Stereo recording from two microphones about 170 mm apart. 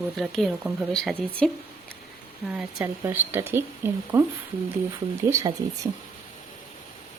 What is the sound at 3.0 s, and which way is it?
Speech, 10° right (ahead or behind).